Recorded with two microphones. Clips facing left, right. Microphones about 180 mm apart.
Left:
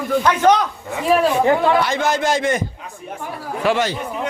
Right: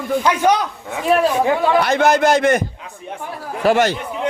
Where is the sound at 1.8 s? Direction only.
65° right (ahead or behind).